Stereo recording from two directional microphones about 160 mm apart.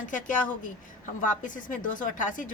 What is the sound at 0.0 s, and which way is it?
A woman's voice, 55° left (ahead or behind).